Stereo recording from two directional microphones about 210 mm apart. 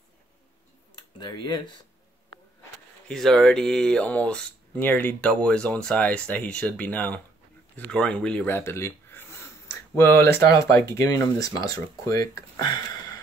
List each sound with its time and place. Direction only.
1.2 s speech: 20° left (ahead or behind)
3.1 s speech: centre (ahead or behind)
12.4 s a sound: 20° left (ahead or behind)